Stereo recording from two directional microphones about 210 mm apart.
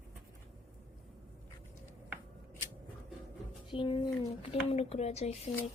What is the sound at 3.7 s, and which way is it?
Speech, 25° left (ahead or behind).